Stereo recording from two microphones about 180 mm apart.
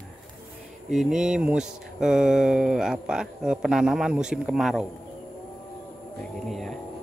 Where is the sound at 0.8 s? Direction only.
Centre (ahead or behind).